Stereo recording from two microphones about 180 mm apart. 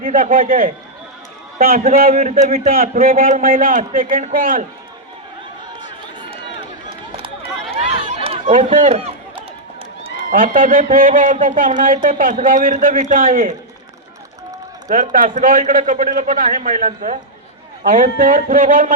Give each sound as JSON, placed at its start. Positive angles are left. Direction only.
{"t": 0.0, "sound": "a man's voice", "side_deg": -50}
{"t": 7.7, "sound": "run", "side_deg": -35}
{"t": 10.2, "sound": "a man's voice", "side_deg": -50}
{"t": 14.8, "sound": "a man's voice", "side_deg": -45}